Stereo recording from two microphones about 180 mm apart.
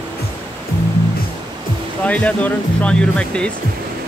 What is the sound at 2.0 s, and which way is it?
Speech, 10° left (ahead or behind).